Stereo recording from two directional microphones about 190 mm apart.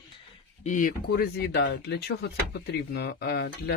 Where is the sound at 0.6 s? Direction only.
40° left (ahead or behind).